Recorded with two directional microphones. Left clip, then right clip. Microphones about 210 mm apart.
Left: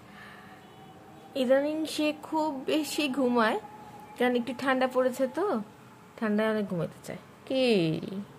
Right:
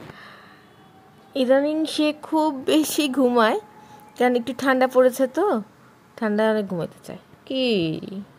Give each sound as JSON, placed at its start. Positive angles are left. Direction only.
{"t": 1.3, "sound": "a woman's voice", "side_deg": -30}